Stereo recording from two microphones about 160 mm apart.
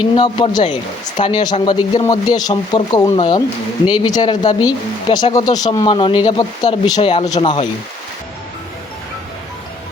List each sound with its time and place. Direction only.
0.2 s speech: 30° left (ahead or behind)